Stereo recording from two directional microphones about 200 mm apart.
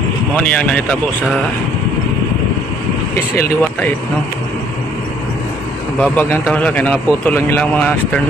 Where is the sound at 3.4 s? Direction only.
10° left (ahead or behind).